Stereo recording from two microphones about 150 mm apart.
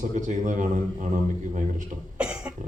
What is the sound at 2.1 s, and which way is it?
Cough, 10° right (ahead or behind).